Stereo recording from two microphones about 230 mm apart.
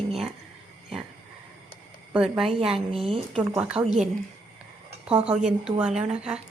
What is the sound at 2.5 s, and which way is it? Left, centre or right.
Speech, right.